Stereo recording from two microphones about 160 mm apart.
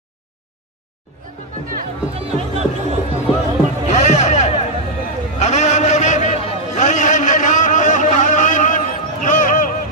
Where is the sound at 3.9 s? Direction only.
45° left (ahead or behind).